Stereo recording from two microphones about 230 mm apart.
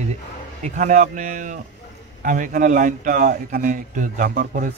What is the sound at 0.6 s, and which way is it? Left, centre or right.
Speech, right.